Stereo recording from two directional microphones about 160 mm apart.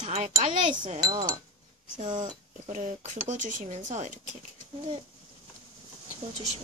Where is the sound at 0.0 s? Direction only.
45° right (ahead or behind).